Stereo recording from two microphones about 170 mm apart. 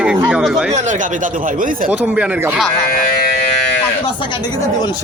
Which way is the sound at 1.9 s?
10° right (ahead or behind).